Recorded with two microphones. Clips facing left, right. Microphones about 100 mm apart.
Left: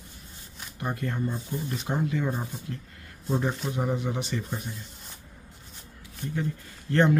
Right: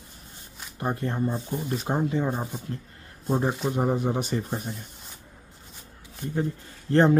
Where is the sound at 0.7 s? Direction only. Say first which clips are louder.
Right 3 dB; 30° right (ahead or behind).